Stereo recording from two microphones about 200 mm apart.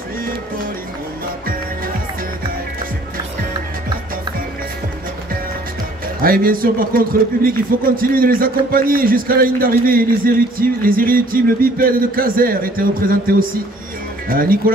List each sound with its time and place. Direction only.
6.2 s a man's voice: 45° right (ahead or behind)